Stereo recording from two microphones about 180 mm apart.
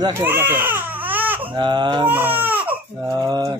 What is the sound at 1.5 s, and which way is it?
Speech, 25° right (ahead or behind).